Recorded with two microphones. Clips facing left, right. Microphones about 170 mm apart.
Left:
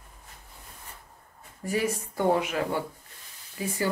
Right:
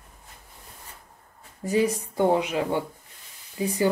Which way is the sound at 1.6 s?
20° right (ahead or behind).